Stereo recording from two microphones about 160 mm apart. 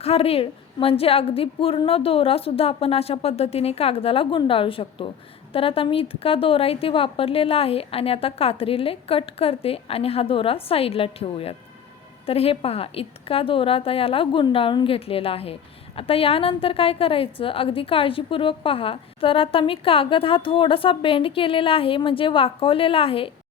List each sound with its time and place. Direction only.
0.0 s a woman's voice: 40° left (ahead or behind)